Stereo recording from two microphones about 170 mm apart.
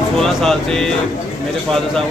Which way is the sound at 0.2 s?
Centre (ahead or behind).